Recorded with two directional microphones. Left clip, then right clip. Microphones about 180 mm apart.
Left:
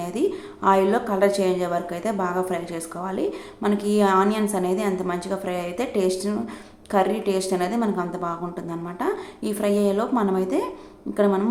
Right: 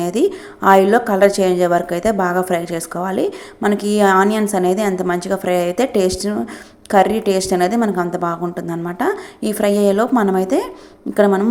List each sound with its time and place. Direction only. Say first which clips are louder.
0.0 s a woman's voice: right 7 dB; 35° right (ahead or behind)